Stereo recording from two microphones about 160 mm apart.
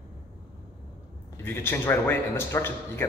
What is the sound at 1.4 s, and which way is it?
A man's voice, 15° left (ahead or behind).